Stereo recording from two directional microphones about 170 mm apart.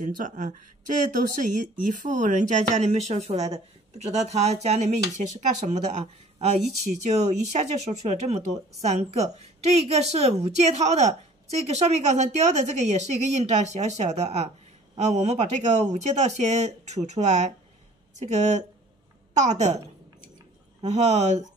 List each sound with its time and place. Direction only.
0.2 s speech: 50° right (ahead or behind)
6.6 s speech: centre (ahead or behind)
7.5 s speech: 40° right (ahead or behind)
20.8 s speech: 40° right (ahead or behind)